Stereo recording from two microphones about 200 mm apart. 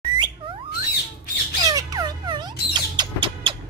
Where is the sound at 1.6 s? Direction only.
20° right (ahead or behind).